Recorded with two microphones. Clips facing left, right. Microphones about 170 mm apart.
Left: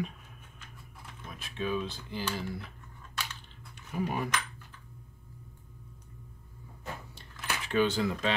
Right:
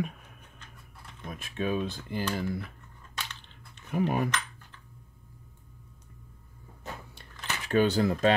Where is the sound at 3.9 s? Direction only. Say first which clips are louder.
Right 5 dB; 50° right (ahead or behind).